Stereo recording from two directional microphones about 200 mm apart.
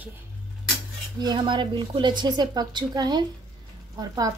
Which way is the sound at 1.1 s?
20° right (ahead or behind).